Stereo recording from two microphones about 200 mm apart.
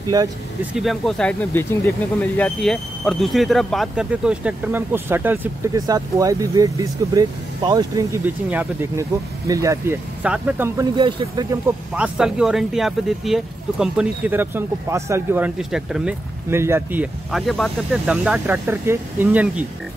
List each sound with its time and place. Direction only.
0.7 s speech: centre (ahead or behind)
11.0 s speech: 25° right (ahead or behind)
11.9 s speech: 5° right (ahead or behind)